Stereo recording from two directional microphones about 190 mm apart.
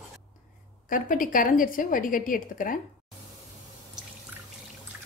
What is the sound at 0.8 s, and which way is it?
A woman's voice, 45° left (ahead or behind).